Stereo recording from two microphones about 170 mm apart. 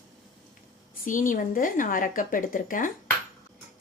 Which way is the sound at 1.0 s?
50° left (ahead or behind).